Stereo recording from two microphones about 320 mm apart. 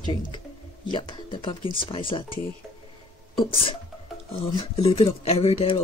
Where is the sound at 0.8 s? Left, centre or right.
Centre.